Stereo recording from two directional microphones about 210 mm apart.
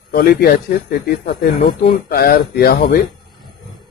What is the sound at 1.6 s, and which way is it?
A man's voice, 35° left (ahead or behind).